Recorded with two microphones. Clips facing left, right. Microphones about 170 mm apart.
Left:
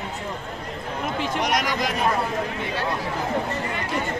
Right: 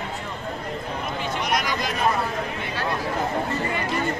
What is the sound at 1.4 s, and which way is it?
Chatter, 80° left.